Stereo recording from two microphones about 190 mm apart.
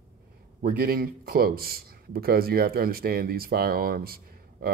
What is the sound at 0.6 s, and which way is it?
A man's voice, 50° right (ahead or behind).